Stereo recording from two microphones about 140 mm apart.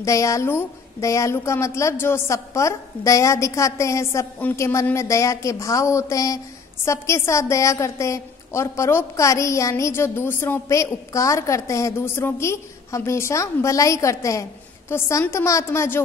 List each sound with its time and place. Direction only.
0.0 s a woman's voice: 20° left (ahead or behind)